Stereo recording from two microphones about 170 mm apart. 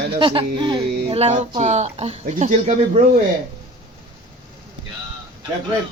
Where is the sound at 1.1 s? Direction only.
40° right (ahead or behind).